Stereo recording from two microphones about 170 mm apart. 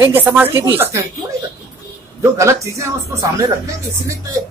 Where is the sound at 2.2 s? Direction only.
15° right (ahead or behind).